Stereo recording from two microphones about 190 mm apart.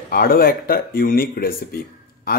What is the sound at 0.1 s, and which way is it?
A man's voice, 50° left (ahead or behind).